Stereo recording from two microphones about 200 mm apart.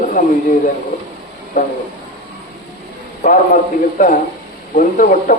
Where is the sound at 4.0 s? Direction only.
40° left (ahead or behind).